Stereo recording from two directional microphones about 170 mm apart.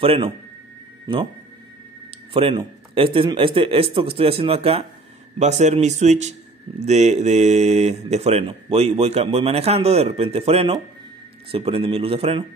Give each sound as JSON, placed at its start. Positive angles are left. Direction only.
{"t": 0.0, "sound": "speech", "side_deg": -35}
{"t": 2.3, "sound": "speech", "side_deg": -30}